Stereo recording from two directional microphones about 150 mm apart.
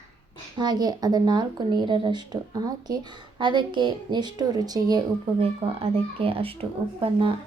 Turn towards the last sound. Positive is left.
turn(degrees=-35)  # may be behind; listen again after turning